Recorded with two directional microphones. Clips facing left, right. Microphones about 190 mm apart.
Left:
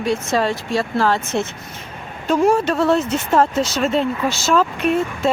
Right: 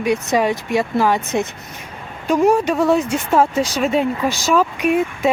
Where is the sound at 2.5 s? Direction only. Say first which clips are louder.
Right 1 dB; 15° right (ahead or behind).